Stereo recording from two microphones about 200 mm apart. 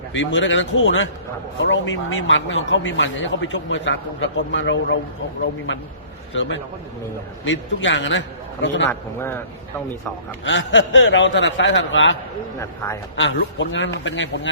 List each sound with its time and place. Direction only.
0.1 s a man's voice: 70° left (ahead or behind)
8.9 s speech: 10° left (ahead or behind)
10.4 s a man's voice: 65° left (ahead or behind)
12.5 s speech: 15° left (ahead or behind)
13.1 s a man's voice: 70° left (ahead or behind)